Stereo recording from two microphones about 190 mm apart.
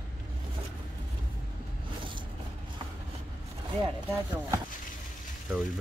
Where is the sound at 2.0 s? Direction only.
25° right (ahead or behind).